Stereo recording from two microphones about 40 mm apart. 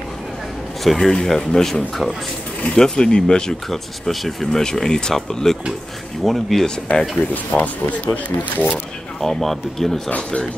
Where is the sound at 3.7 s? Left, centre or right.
Centre.